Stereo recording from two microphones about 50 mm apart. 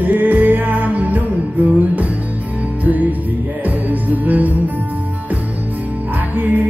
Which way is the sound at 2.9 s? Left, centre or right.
Right.